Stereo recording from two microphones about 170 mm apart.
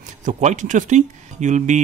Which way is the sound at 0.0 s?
45° right (ahead or behind).